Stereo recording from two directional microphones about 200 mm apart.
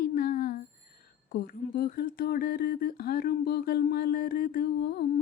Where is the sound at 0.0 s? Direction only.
45° left (ahead or behind).